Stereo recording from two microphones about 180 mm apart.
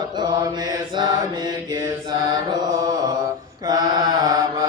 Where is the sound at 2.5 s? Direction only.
20° right (ahead or behind).